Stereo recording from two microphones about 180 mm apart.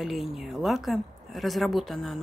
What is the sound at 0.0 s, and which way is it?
A woman's voice, centre (ahead or behind).